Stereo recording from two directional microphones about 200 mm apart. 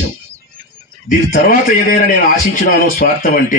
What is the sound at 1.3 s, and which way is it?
A man's voice, 45° left (ahead or behind).